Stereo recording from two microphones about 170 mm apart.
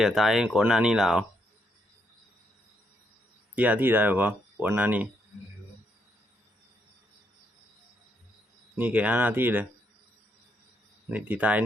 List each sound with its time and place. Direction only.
0.0 s speech: centre (ahead or behind)
3.5 s speech: 10° right (ahead or behind)
8.7 s speech: 10° right (ahead or behind)
11.1 s speech: 10° right (ahead or behind)